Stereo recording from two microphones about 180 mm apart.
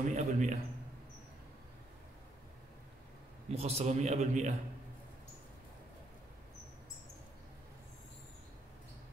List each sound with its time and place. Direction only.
0.0 s a man's voice: 40° right (ahead or behind)
3.5 s a man's voice: 35° right (ahead or behind)